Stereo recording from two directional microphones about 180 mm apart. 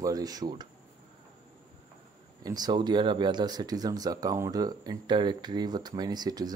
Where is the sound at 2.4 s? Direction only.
20° right (ahead or behind).